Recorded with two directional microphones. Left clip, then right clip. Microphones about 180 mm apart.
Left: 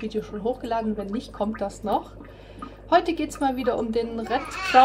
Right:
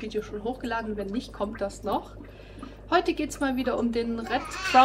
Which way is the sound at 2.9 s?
35° left (ahead or behind).